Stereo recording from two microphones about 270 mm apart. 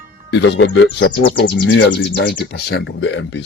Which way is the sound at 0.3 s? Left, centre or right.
Left.